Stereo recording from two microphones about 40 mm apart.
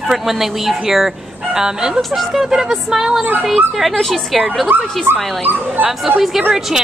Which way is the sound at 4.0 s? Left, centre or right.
Centre.